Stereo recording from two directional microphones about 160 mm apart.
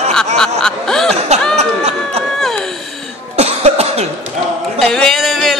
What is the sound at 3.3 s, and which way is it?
Cough, 40° right (ahead or behind).